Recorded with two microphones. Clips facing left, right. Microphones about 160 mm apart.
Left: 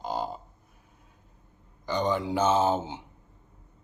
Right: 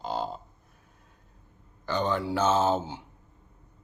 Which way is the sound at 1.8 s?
15° left (ahead or behind).